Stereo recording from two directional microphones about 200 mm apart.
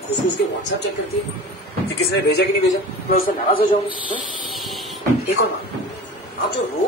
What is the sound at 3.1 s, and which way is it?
Speech, 45° left (ahead or behind).